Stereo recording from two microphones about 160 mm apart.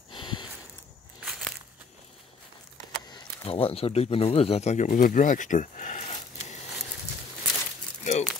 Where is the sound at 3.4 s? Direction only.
35° left (ahead or behind).